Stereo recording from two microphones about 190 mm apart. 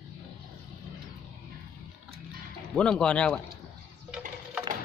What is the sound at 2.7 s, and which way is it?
Speech, 5° left (ahead or behind).